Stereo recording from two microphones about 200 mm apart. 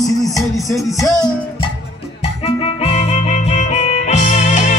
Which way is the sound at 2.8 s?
30° left (ahead or behind).